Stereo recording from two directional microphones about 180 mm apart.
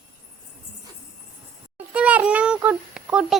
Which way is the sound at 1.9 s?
10° right (ahead or behind).